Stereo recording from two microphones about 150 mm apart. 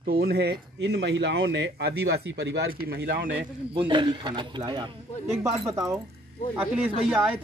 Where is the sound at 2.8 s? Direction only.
85° right.